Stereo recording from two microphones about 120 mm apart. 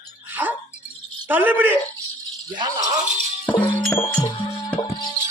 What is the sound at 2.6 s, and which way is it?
Speech, 35° right (ahead or behind).